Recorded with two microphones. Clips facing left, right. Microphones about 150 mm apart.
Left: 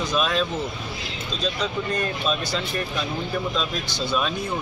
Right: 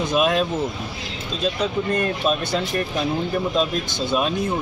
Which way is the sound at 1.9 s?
55° right (ahead or behind).